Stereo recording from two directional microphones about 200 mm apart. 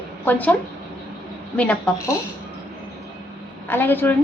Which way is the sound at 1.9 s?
15° left (ahead or behind).